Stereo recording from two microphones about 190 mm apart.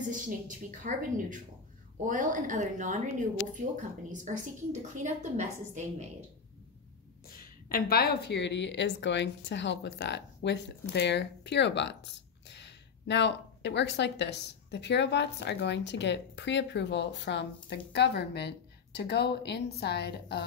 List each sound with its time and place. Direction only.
0.1 s a woman's voice: 45° right (ahead or behind)
7.2 s a woman's voice: 50° left (ahead or behind)